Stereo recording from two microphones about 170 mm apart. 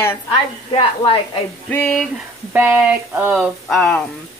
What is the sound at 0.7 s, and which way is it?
Speech, 30° left (ahead or behind).